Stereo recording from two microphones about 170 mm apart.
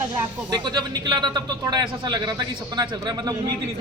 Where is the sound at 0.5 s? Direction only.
25° right (ahead or behind).